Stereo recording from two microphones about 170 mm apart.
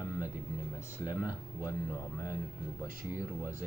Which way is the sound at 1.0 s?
25° left (ahead or behind).